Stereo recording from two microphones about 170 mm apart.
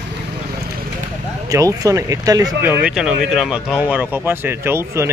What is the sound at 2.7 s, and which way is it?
Speech, 5° right (ahead or behind).